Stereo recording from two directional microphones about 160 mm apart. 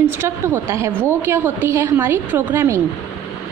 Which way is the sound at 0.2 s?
15° right (ahead or behind).